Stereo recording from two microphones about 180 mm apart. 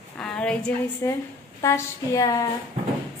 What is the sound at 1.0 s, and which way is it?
A woman's voice, 15° left (ahead or behind).